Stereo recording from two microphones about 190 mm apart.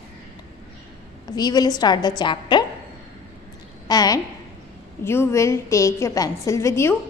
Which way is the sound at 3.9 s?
20° left (ahead or behind).